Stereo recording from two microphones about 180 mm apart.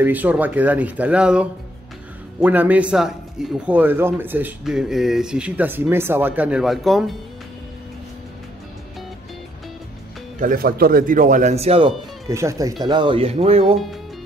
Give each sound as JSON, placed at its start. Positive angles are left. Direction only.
{"t": 0.0, "sound": "a man's voice", "side_deg": -10}
{"t": 10.4, "sound": "a man's voice", "side_deg": -55}
{"t": 12.3, "sound": "speech", "side_deg": -15}